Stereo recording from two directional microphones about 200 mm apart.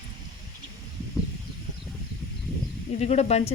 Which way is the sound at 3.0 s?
30° left (ahead or behind).